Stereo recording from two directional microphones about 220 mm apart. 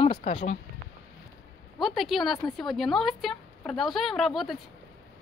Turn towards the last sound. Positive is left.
turn(degrees=0)  # may be behind; listen again after turning